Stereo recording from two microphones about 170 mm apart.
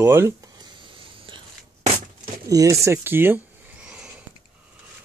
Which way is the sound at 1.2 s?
30° right (ahead or behind).